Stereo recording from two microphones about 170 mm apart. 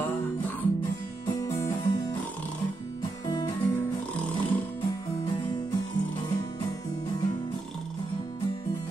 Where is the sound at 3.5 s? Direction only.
10° left (ahead or behind).